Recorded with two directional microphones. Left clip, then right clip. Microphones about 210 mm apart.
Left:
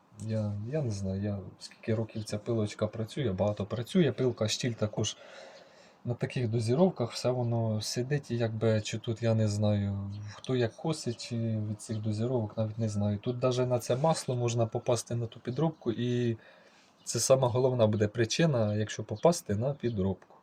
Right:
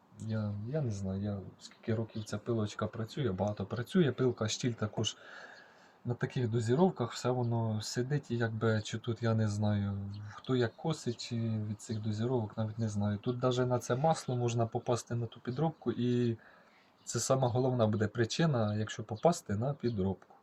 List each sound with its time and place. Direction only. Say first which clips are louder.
0.7 s speech: left 3 dB; 25° left (ahead or behind)
6.1 s speech: left 2 dB; 25° left (ahead or behind)